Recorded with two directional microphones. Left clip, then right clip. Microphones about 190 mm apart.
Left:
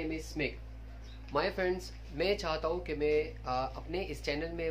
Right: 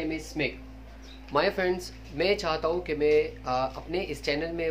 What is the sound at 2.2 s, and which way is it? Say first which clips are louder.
Speech: right 6 dB; 10° left (ahead or behind).